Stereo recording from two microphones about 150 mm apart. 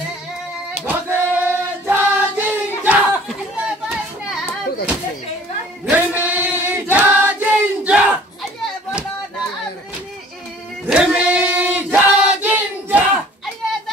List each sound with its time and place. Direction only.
0.8 s singing: 10° right (ahead or behind)
3.8 s children playing: centre (ahead or behind)
5.9 s choir: 10° right (ahead or behind)
10.9 s choir: 5° right (ahead or behind)